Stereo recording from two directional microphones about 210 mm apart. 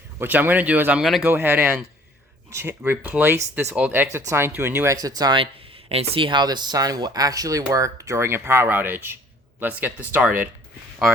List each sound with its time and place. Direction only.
0.2 s speech: 10° right (ahead or behind)